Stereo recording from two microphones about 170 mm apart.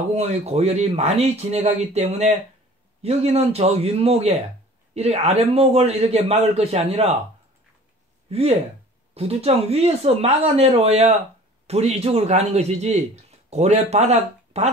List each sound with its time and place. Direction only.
0.1 s a man's voice: 40° right (ahead or behind)
8.3 s a man's voice: 35° right (ahead or behind)